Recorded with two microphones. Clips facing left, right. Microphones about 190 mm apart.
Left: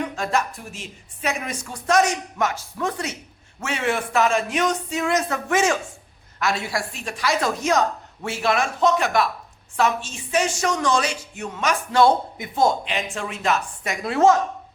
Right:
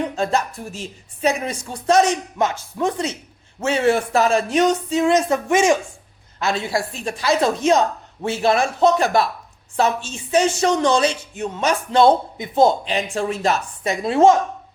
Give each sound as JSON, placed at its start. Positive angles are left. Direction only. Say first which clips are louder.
{"t": 0.0, "sound": "a woman's voice", "louder": "right 3 dB", "side_deg": -30}
{"t": 3.6, "sound": "a woman's voice", "louder": "right 7 dB", "side_deg": -35}